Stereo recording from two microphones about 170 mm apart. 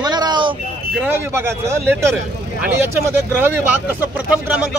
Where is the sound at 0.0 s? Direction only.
25° right (ahead or behind).